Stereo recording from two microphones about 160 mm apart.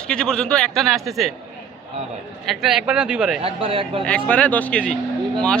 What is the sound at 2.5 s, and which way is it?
Speech, centre (ahead or behind).